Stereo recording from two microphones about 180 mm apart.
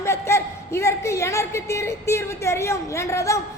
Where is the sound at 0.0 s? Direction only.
15° left (ahead or behind).